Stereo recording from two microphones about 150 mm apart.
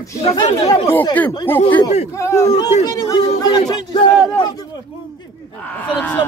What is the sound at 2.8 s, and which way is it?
Speech, 25° left (ahead or behind).